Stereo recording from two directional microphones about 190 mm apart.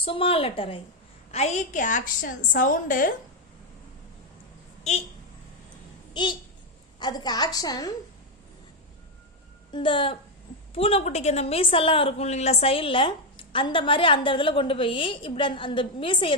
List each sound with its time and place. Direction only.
0.0 s a woman's voice: 30° left (ahead or behind); by 3.1 s 45° left (ahead or behind)
4.9 s a woman's voice: 35° left (ahead or behind)
6.2 s a woman's voice: 25° left (ahead or behind)
9.7 s a woman's voice: 25° left (ahead or behind)